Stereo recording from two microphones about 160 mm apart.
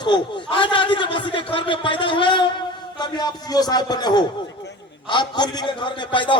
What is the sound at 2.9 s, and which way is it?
A man's voice, 25° left (ahead or behind).